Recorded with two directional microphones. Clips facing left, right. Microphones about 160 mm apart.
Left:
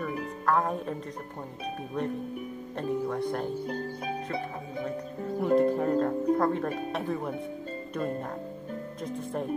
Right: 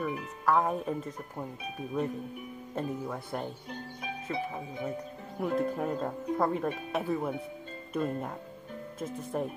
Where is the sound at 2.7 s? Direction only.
5° right (ahead or behind).